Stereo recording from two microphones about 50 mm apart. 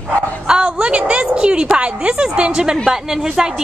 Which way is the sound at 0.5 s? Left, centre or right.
Centre.